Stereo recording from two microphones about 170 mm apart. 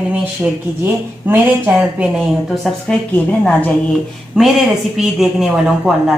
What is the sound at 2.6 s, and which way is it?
A woman's voice, 5° left (ahead or behind).